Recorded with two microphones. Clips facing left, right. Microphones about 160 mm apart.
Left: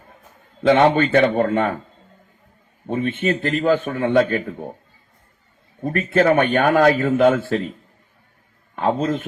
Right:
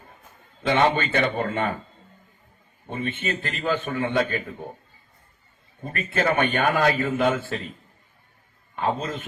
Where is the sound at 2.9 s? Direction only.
55° left (ahead or behind).